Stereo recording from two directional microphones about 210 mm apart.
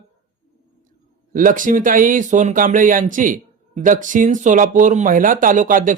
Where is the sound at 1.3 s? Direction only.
40° right (ahead or behind).